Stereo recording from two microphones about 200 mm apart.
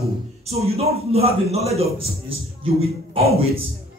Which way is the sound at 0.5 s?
30° right (ahead or behind).